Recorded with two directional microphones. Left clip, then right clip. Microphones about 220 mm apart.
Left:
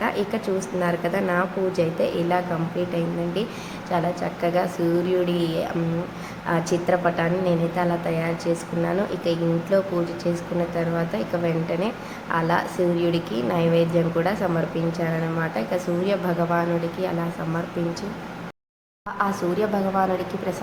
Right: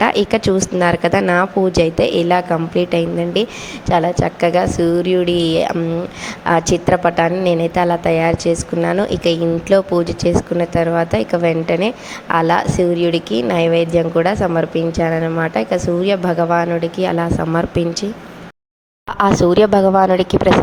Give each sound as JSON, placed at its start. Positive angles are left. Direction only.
{"t": 0.0, "sound": "a woman's voice", "side_deg": -40}
{"t": 19.1, "sound": "a woman's voice", "side_deg": -40}